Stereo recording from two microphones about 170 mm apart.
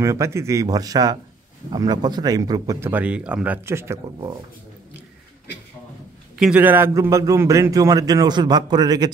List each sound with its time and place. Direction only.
0.0 s a man's voice: 15° right (ahead or behind)
2.9 s speech: 10° right (ahead or behind)
6.3 s a man's voice: 5° right (ahead or behind); by 9.1 s 25° right (ahead or behind)